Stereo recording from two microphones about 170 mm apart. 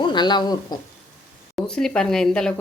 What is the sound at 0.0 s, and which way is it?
Speech, 25° left (ahead or behind).